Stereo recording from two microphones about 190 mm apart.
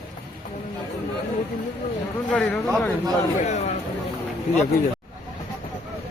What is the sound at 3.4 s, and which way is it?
Speech, 35° left (ahead or behind).